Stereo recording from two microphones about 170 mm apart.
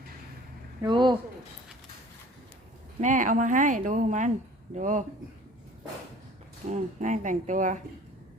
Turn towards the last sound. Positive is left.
turn(degrees=-50)  # may be behind; listen again after turning